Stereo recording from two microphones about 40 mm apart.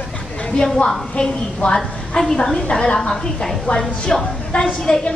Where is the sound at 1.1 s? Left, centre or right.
Left.